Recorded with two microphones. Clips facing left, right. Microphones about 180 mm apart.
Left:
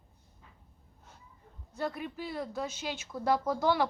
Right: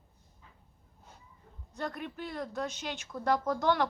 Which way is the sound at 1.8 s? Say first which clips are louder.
Left 2 dB; 5° left (ahead or behind).